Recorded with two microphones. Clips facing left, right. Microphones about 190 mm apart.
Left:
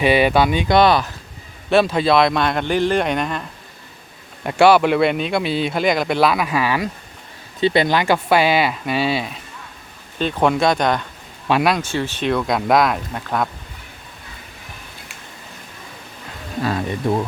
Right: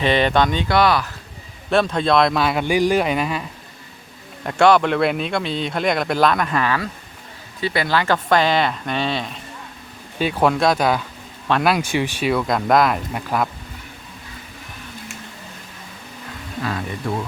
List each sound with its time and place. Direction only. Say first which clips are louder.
0.0 s speech: left 2 dB; 10° left (ahead or behind)
0.8 s speech: left 3 dB; 25° left (ahead or behind)
1.7 s speech: left 2 dB; 5° left (ahead or behind)
4.4 s speech: left 2 dB; 5° left (ahead or behind)
7.6 s speech: left 4 dB; 25° left (ahead or behind); by 9.4 s 5° left (ahead or behind)
10.2 s speech: even; 10° right (ahead or behind)
11.4 s speech: left 2 dB; 10° left (ahead or behind)
11.7 s speech: right 1 dB; 15° right (ahead or behind)
16.6 s speech: left 5 dB; 30° left (ahead or behind)